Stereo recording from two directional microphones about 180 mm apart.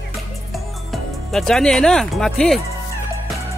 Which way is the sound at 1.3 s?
Centre (ahead or behind).